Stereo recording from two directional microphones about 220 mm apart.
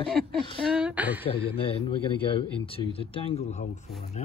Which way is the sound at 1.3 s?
25° left (ahead or behind).